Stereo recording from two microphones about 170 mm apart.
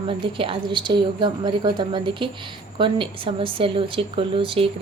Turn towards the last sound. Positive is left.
turn(degrees=-30)  # may be behind; listen again after turning